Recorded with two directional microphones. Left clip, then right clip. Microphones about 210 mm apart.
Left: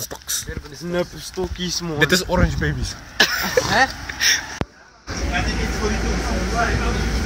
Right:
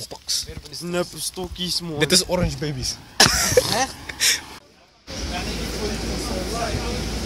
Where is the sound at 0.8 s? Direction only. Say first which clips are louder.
Left 1 dB; 55° right (ahead or behind).